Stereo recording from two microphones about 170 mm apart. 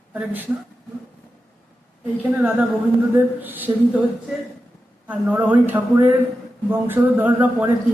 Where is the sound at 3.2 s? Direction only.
10° right (ahead or behind).